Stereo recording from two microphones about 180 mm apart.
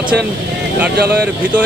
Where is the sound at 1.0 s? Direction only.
65° right (ahead or behind).